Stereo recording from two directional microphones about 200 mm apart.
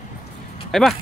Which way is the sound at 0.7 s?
Centre (ahead or behind).